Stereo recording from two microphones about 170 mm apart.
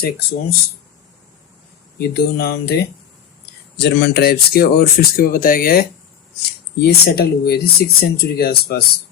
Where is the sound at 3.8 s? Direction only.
90° left; by 5.8 s 60° left (ahead or behind).